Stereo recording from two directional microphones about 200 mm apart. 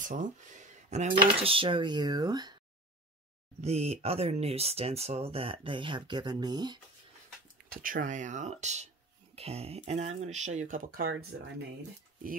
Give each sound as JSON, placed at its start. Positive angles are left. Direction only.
{"t": 0.0, "sound": "speech", "side_deg": -40}
{"t": 3.6, "sound": "speech", "side_deg": -30}
{"t": 7.7, "sound": "speech", "side_deg": -45}